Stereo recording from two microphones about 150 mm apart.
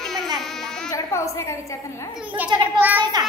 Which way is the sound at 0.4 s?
Centre (ahead or behind).